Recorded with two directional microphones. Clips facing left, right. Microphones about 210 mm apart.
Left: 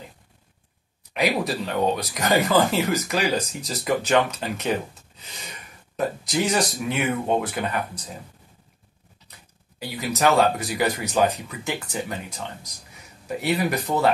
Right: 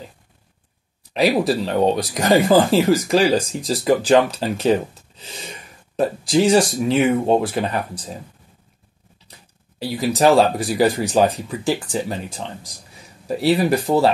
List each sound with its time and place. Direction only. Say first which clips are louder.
1.1 s speech: right 6 dB; 35° right (ahead or behind)
5.9 s speech: right 7 dB; 30° right (ahead or behind)
9.8 s speech: right 7 dB; 35° right (ahead or behind)